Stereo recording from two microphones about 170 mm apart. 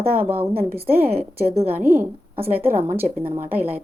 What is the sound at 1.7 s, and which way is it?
A woman's voice, 10° right (ahead or behind).